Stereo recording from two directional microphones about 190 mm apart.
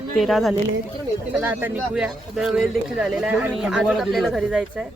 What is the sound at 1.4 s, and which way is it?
Speech, 10° right (ahead or behind).